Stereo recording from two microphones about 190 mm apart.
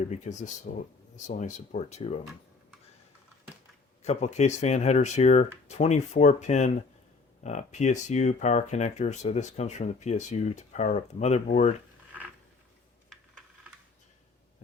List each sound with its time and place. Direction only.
0.1 s speech: 40° left (ahead or behind)
4.0 s speech: 35° left (ahead or behind)